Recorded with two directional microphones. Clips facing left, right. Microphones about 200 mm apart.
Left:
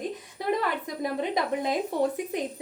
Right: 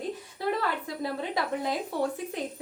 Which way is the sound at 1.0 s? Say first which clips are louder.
Left 5 dB; 20° left (ahead or behind).